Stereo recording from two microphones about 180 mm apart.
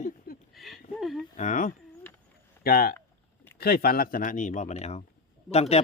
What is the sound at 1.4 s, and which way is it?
Speech, 45° left (ahead or behind).